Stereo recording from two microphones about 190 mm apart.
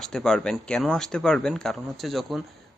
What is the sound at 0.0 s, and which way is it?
A man's voice, 5° left (ahead or behind).